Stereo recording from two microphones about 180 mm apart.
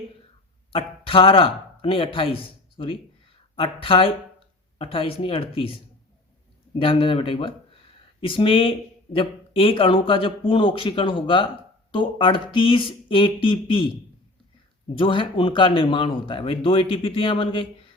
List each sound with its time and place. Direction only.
0.7 s speech: 30° left (ahead or behind)
14.9 s speech: 30° left (ahead or behind)